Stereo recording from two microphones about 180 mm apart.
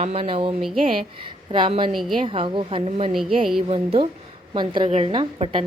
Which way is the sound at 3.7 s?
35° right (ahead or behind).